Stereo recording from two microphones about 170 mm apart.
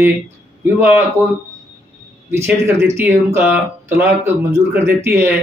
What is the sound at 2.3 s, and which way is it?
Speech, 15° right (ahead or behind).